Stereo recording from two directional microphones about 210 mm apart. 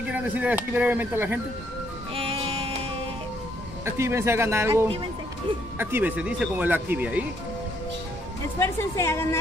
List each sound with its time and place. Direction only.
0.0 s speech: 5° right (ahead or behind)
2.1 s music: 25° right (ahead or behind)
3.8 s speech: 10° right (ahead or behind)
8.5 s a woman's voice: 10° left (ahead or behind)